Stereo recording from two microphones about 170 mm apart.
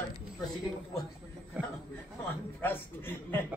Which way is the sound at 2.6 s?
10° left (ahead or behind).